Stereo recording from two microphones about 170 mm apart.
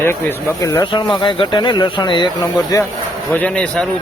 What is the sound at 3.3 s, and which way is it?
Speech, 5° left (ahead or behind).